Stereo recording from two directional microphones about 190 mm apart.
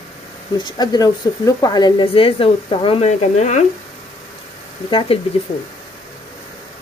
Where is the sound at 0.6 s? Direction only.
20° left (ahead or behind); by 3.6 s 35° left (ahead or behind).